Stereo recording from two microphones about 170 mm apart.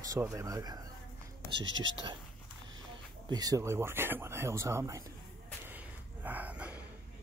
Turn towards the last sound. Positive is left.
turn(degrees=-10)  # may be behind; listen again after turning